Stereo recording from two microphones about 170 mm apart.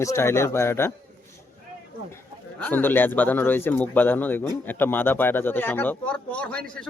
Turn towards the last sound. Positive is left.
turn(degrees=5)  # may be behind; listen again after turning